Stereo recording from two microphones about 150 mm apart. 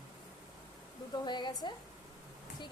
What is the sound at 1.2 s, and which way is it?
Speech, 30° left (ahead or behind).